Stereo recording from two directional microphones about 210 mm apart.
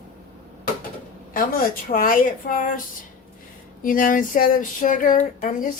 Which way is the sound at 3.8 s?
40° left (ahead or behind).